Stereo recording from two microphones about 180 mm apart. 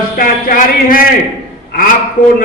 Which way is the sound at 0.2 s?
50° left (ahead or behind).